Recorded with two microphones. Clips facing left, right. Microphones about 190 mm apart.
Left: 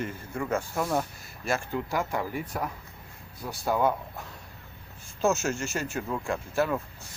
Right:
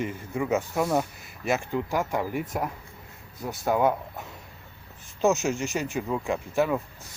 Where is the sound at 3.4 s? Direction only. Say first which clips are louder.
Right 2 dB; 20° right (ahead or behind).